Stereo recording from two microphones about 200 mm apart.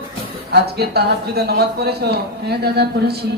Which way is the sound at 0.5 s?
55° right (ahead or behind).